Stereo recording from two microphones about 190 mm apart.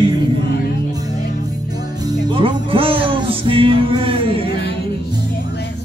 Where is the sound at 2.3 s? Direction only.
30° right (ahead or behind).